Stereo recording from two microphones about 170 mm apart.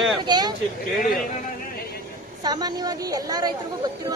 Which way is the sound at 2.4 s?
25° right (ahead or behind).